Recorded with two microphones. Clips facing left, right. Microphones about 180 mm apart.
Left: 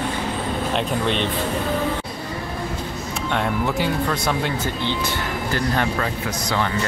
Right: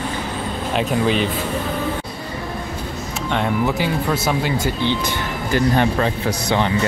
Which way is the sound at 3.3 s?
Centre (ahead or behind).